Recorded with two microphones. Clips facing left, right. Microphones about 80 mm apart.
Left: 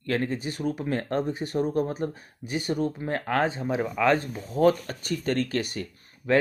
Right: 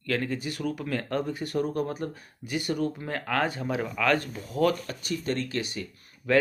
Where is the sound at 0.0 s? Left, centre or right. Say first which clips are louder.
Left 2 dB; left.